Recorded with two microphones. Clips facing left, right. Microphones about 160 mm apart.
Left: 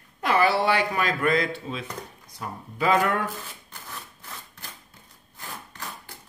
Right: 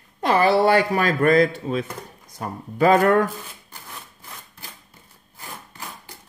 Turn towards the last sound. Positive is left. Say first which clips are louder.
# even
turn(degrees=-10)  # may be behind; listen again after turning